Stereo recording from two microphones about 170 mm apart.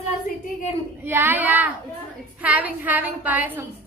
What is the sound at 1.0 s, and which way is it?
A woman's voice, 10° right (ahead or behind).